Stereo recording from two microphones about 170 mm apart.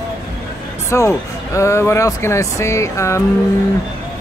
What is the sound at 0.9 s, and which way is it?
Speech, 15° left (ahead or behind).